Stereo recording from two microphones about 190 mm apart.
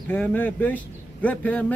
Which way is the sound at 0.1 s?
10° left (ahead or behind).